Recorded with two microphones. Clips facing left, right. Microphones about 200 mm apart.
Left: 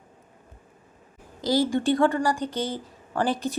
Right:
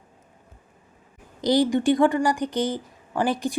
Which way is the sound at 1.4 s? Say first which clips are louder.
Right 3 dB; 20° right (ahead or behind).